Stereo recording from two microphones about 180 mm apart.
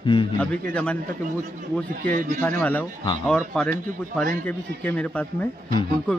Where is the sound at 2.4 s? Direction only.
10° left (ahead or behind).